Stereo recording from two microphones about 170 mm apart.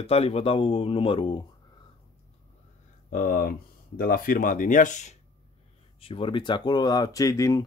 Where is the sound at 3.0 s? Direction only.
55° left (ahead or behind).